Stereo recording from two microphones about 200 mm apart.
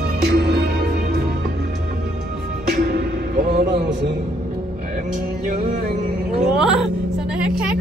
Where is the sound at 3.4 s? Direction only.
45° right (ahead or behind).